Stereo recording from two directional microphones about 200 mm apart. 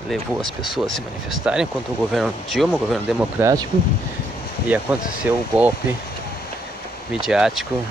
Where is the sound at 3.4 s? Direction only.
15° right (ahead or behind).